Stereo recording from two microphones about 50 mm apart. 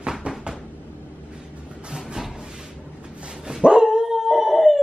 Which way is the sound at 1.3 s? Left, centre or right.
Right.